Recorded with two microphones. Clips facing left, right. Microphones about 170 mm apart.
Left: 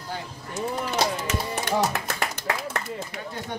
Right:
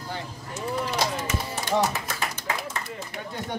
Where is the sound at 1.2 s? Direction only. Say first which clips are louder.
Left 2 dB; 65° left (ahead or behind).